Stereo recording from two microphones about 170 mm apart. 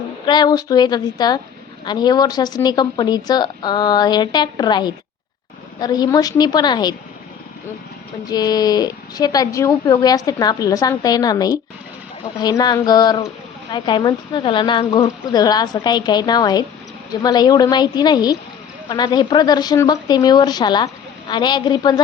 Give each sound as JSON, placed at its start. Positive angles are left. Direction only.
{"t": 0.3, "sound": "speech", "side_deg": 25}
{"t": 8.3, "sound": "speech", "side_deg": 25}